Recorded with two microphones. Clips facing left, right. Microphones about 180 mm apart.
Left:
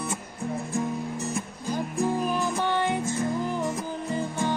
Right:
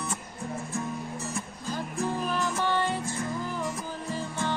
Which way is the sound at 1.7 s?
15° left (ahead or behind).